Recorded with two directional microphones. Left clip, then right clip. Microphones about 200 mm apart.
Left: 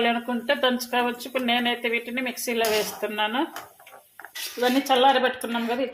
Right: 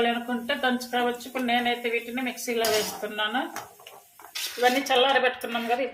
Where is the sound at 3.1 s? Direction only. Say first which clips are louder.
Left 2 dB; 45° left (ahead or behind).